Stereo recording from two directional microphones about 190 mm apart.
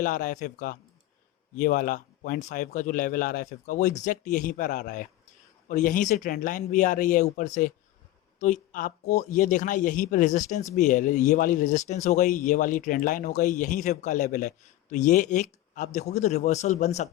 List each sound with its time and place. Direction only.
0.0 s a man's voice: 45° left (ahead or behind)